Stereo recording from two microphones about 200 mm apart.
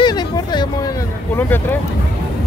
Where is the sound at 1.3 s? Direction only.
10° left (ahead or behind).